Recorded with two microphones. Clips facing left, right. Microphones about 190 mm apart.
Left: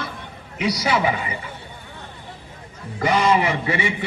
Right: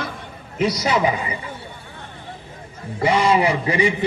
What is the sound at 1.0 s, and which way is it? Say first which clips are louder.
Speech: right 2 dB; 30° right (ahead or behind).